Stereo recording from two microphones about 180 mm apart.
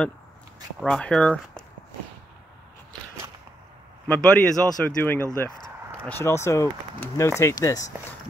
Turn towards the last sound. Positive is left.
turn(degrees=15)  # may be behind; listen again after turning